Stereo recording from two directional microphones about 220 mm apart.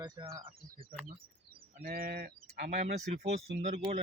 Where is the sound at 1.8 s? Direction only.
45° right (ahead or behind).